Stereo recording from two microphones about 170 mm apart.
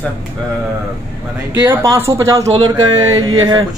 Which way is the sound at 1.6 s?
15° right (ahead or behind).